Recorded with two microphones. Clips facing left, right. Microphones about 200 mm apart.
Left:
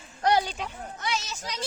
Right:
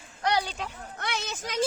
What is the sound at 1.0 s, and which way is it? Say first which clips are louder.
Speech: even; 60° right (ahead or behind).